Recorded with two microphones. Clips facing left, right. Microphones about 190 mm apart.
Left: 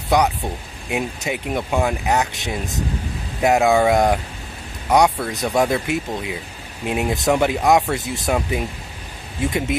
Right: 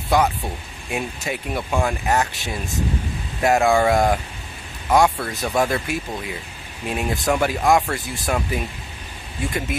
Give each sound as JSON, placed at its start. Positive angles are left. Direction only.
{"t": 0.1, "sound": "speech", "side_deg": 15}